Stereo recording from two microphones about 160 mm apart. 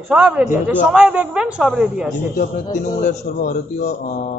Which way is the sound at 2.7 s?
50° left (ahead or behind).